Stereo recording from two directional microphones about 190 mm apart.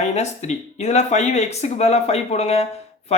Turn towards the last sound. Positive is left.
turn(degrees=35)  # may be behind; listen again after turning